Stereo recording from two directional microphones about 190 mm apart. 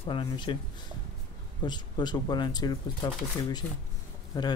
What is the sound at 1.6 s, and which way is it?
Speech, 25° left (ahead or behind).